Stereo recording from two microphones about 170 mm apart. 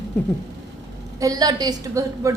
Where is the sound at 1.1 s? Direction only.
20° right (ahead or behind).